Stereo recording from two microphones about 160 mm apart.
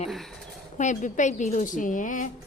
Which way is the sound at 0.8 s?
50° left (ahead or behind).